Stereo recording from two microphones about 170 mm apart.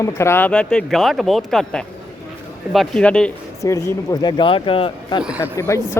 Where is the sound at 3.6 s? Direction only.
20° left (ahead or behind).